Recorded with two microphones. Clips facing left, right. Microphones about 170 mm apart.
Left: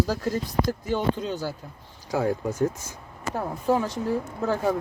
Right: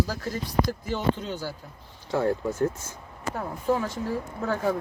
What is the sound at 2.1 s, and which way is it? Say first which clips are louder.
Speech: even; 10° left (ahead or behind).